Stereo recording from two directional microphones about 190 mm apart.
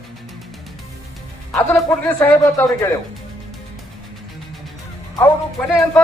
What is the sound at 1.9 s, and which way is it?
Speech, 10° left (ahead or behind).